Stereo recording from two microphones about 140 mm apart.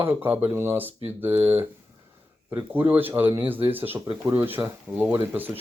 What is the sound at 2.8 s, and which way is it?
Speech, 15° right (ahead or behind).